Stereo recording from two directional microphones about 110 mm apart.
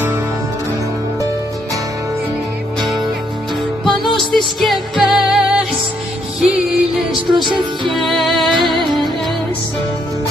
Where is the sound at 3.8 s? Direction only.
Centre (ahead or behind).